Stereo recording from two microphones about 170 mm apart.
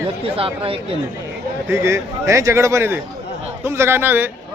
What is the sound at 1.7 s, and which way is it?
A man's voice, 15° right (ahead or behind).